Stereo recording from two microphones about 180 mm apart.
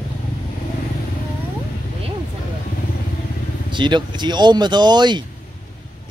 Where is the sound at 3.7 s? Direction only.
25° right (ahead or behind).